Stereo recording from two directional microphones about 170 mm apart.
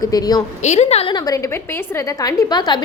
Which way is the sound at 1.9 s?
15° left (ahead or behind).